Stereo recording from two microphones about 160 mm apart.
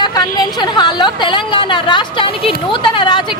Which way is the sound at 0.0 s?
25° left (ahead or behind).